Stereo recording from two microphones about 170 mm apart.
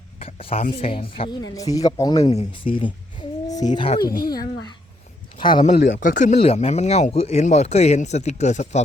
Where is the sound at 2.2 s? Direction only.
40° left (ahead or behind).